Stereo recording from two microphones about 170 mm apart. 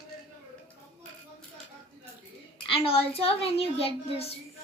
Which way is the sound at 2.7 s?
35° left (ahead or behind).